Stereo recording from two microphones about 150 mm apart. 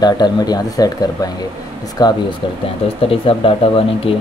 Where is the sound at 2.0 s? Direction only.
25° left (ahead or behind).